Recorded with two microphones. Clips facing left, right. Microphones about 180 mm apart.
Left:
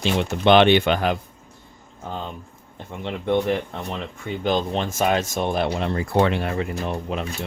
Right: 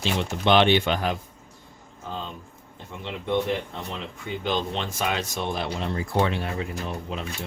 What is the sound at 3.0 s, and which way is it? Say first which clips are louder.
Speech: left 6 dB; 55° left (ahead or behind).